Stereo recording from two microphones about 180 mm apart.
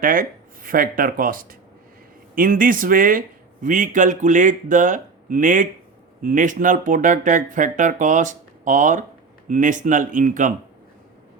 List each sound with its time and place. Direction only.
0.0 s speech: 50° right (ahead or behind)